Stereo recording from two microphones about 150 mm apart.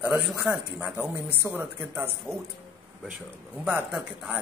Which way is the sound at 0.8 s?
15° right (ahead or behind).